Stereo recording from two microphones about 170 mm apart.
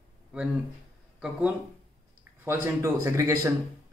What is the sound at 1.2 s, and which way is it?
Speech, 10° right (ahead or behind).